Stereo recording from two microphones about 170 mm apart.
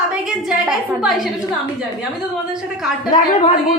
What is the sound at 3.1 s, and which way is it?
Speech, 45° left (ahead or behind).